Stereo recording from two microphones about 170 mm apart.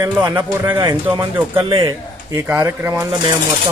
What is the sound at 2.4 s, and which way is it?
Speech, 10° right (ahead or behind).